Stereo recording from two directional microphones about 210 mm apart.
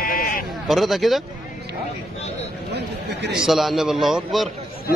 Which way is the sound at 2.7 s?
55° right (ahead or behind).